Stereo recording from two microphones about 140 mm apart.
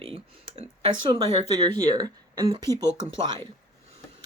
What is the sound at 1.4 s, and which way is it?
Speech, 30° right (ahead or behind).